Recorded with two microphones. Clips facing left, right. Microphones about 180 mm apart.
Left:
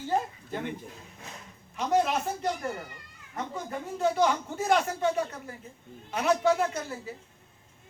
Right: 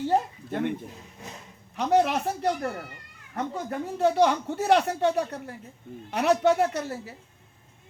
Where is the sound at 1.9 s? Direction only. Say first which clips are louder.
Right 3 dB; 65° right (ahead or behind).